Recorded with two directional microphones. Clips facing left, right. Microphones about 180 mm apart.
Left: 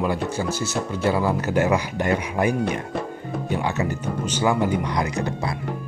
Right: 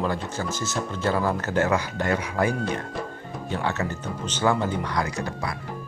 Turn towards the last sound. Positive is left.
turn(degrees=25)  # may be behind; listen again after turning